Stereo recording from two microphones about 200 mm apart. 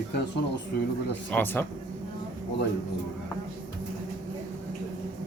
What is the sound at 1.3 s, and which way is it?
Speech, 10° left (ahead or behind).